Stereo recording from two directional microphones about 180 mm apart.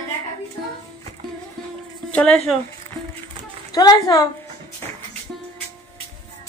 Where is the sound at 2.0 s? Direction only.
5° left (ahead or behind).